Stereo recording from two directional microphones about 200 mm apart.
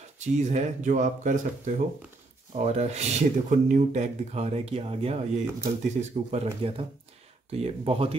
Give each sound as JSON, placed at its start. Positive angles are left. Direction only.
{"t": 0.2, "sound": "speech", "side_deg": -35}
{"t": 2.5, "sound": "speech", "side_deg": -35}